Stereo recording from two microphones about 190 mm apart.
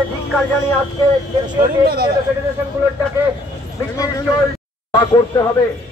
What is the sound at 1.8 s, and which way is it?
Speech, 55° right (ahead or behind).